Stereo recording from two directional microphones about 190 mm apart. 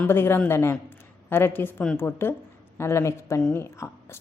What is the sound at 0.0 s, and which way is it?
A woman's voice, 10° left (ahead or behind).